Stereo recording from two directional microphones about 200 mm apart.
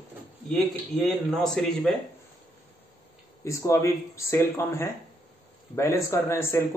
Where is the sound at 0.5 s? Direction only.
5° left (ahead or behind).